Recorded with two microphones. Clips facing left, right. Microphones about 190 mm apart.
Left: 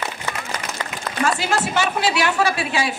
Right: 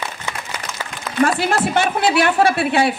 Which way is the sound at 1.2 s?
55° right (ahead or behind).